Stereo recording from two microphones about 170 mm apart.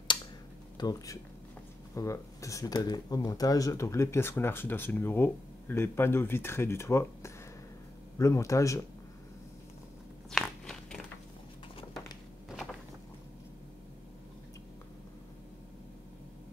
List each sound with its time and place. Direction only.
0.7 s speech: 20° left (ahead or behind)
10.3 s crunch: 5° left (ahead or behind)